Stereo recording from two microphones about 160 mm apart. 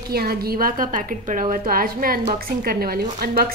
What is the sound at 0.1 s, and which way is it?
A woman's voice, 75° right (ahead or behind).